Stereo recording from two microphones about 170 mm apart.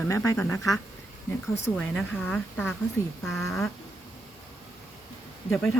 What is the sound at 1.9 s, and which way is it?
Speech, 5° left (ahead or behind).